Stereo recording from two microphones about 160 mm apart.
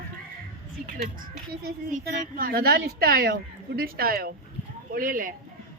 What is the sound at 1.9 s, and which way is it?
A woman's voice, 55° right (ahead or behind).